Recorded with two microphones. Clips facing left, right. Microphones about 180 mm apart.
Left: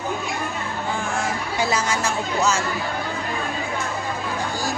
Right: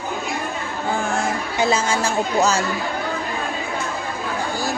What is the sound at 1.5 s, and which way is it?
Speech, 25° right (ahead or behind).